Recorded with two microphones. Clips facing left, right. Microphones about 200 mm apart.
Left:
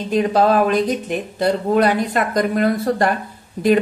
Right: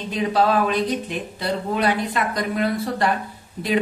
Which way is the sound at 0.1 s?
45° left (ahead or behind).